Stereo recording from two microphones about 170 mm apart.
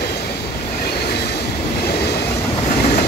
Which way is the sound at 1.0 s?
70° left (ahead or behind).